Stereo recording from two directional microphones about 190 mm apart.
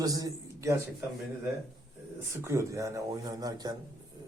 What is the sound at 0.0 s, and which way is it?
Speech, 20° right (ahead or behind).